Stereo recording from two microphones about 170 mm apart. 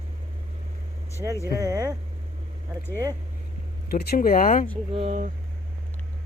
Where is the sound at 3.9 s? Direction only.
60° left (ahead or behind).